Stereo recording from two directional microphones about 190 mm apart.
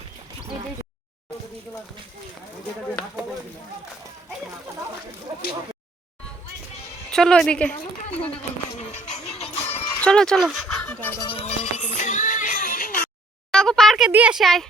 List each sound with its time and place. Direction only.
7.1 s speech: 5° left (ahead or behind)
9.0 s music: 35° left (ahead or behind)
10.0 s speech: 5° left (ahead or behind)
11.2 s music: 25° left (ahead or behind); by 13.0 s 45° left (ahead or behind)
13.5 s speech: 5° left (ahead or behind)